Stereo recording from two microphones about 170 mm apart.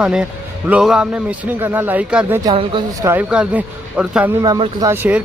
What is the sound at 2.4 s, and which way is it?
Speech, 25° right (ahead or behind).